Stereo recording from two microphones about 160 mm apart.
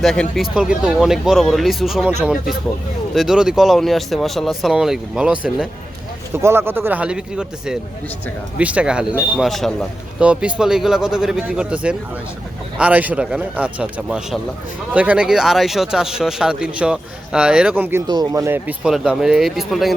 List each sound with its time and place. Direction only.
0.0 s a man's voice: centre (ahead or behind)
18.1 s speech: 20° right (ahead or behind)
18.8 s speech: 5° right (ahead or behind)